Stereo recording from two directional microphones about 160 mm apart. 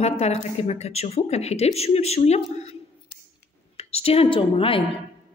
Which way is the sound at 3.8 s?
40° left (ahead or behind).